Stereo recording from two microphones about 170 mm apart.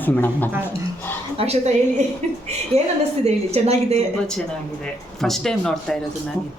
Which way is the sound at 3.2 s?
40° right (ahead or behind).